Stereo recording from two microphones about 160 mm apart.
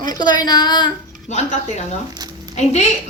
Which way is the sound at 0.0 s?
25° left (ahead or behind).